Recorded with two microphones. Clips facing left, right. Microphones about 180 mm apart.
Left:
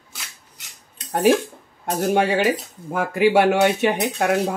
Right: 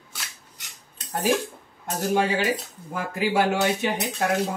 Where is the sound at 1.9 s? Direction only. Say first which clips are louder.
Left 4 dB; 65° left (ahead or behind).